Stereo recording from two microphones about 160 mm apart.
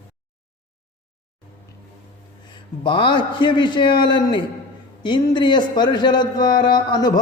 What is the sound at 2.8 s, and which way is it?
A man's voice, 30° left (ahead or behind).